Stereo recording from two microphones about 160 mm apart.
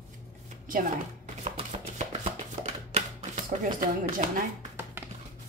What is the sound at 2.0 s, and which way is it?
Chopping, 45° right (ahead or behind).